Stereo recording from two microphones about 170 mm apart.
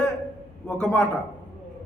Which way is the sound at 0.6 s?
10° left (ahead or behind).